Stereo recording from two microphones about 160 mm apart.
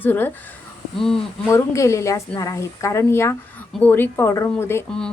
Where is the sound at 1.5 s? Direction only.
15° left (ahead or behind).